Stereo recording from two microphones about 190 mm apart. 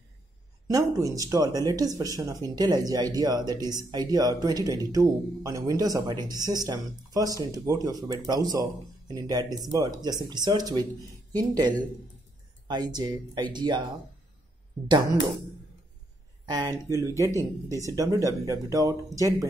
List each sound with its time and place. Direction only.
0.7 s speech: 15° right (ahead or behind)
16.4 s speech: 20° right (ahead or behind)